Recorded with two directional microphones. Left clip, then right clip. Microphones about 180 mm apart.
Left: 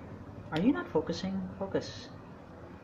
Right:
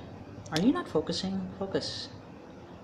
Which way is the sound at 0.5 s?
25° right (ahead or behind).